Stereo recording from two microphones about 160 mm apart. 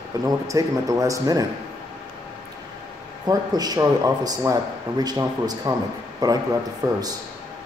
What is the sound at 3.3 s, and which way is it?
A man's voice, 25° right (ahead or behind).